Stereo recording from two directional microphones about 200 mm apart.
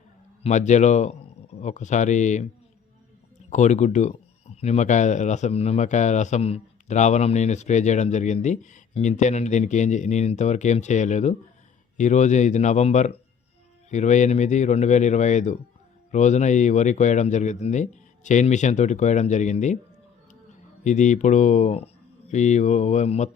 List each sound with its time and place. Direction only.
0.4 s speech: 35° left (ahead or behind)
3.5 s speech: 35° left (ahead or behind)
20.8 s speech: 35° left (ahead or behind)